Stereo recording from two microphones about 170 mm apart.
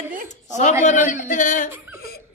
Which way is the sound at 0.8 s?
50° left (ahead or behind).